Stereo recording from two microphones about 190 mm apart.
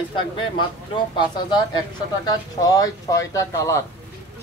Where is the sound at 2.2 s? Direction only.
20° left (ahead or behind).